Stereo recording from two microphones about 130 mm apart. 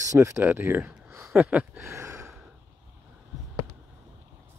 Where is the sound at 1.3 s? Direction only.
5° right (ahead or behind).